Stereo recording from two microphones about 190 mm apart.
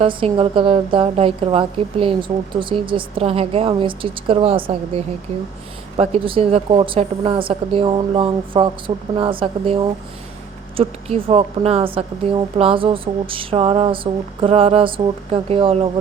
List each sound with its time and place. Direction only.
0.0 s a woman's voice: 30° right (ahead or behind)